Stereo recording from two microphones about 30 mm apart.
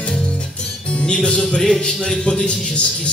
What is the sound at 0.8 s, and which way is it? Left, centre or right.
Music, left.